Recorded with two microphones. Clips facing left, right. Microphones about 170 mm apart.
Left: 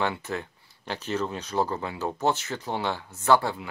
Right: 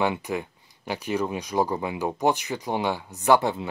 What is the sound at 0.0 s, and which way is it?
Speech, 15° right (ahead or behind).